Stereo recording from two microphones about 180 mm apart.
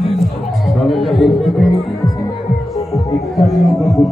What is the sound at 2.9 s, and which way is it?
Music, 20° left (ahead or behind).